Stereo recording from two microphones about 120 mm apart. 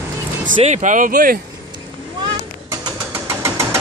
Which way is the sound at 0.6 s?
75° right (ahead or behind).